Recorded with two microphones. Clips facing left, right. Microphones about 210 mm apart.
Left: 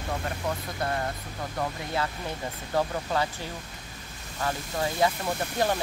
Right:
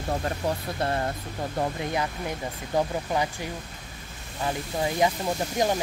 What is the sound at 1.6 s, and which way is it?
Speech, 20° right (ahead or behind).